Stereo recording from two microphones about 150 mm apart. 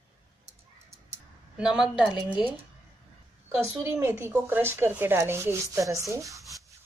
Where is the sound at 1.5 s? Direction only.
5° right (ahead or behind).